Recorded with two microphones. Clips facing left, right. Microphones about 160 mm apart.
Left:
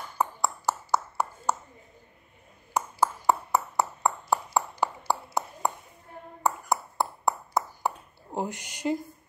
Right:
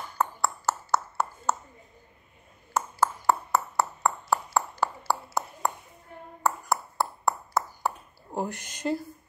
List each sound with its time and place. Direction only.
0.2 s ping: 15° left (ahead or behind)
2.7 s ping: 15° left (ahead or behind)